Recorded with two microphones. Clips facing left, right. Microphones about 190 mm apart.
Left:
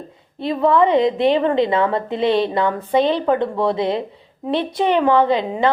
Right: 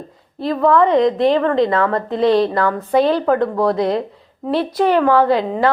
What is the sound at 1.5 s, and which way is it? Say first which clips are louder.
Speech: right 1 dB; centre (ahead or behind).